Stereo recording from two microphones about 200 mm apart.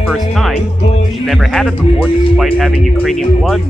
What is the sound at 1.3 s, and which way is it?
Speech, centre (ahead or behind).